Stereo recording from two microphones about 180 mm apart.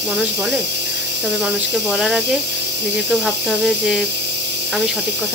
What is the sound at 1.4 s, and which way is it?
Speech, centre (ahead or behind).